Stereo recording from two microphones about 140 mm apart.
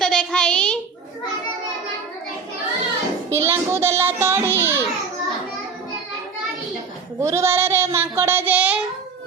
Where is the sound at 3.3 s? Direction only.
15° right (ahead or behind).